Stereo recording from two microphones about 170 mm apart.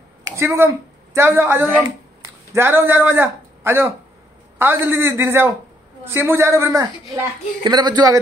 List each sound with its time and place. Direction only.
0.4 s a man's voice: 15° right (ahead or behind)